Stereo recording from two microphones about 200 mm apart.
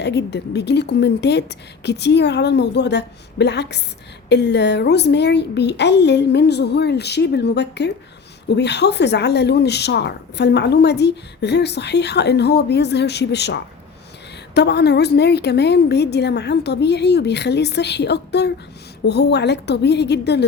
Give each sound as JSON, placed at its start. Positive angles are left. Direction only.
{"t": 0.0, "sound": "speech", "side_deg": 60}